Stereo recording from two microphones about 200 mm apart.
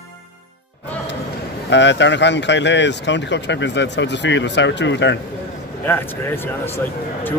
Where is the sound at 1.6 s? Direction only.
60° left (ahead or behind).